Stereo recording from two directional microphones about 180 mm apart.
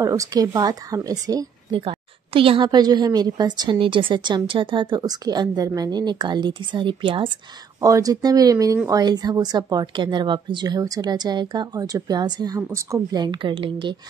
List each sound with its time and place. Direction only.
0.0 s a woman's voice: 20° right (ahead or behind)